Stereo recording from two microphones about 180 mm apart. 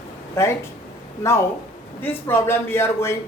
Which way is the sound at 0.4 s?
15° left (ahead or behind).